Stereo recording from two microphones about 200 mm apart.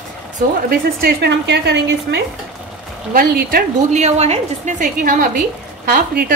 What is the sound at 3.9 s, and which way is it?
A woman's voice, 30° right (ahead or behind).